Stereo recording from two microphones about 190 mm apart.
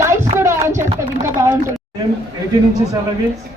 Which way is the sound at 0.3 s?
15° right (ahead or behind).